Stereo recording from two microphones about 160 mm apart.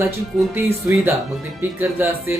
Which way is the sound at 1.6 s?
15° right (ahead or behind).